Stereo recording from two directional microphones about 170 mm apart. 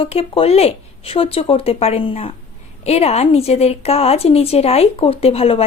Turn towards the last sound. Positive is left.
turn(degrees=35)  # may be behind; listen again after turning